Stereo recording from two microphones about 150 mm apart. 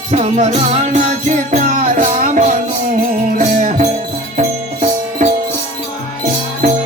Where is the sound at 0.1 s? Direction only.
45° right (ahead or behind).